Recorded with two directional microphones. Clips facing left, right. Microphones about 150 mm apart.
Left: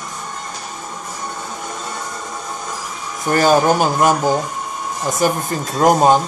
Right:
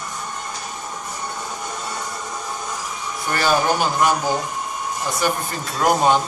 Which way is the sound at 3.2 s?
45° left (ahead or behind).